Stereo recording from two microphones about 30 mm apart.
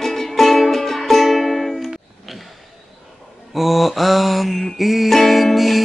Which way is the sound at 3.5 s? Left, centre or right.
Centre.